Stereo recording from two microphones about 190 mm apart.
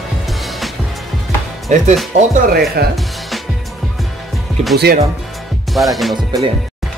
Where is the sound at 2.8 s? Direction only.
55° right (ahead or behind).